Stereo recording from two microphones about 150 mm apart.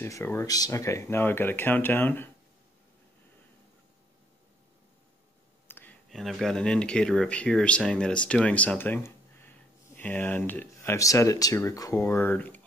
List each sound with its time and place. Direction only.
0.0 s speech: 15° left (ahead or behind)
5.7 s a sound: 15° left (ahead or behind)
6.0 s speech: centre (ahead or behind)